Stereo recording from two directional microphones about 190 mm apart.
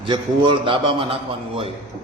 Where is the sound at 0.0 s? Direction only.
25° right (ahead or behind).